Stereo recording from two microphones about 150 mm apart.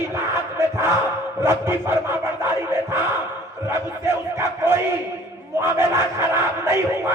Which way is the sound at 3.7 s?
15° right (ahead or behind).